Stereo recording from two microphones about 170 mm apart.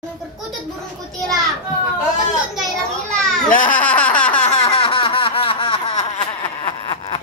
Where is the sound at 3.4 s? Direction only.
50° left (ahead or behind).